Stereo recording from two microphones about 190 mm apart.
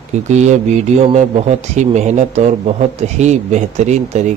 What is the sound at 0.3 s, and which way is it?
A man's voice, 40° right (ahead or behind).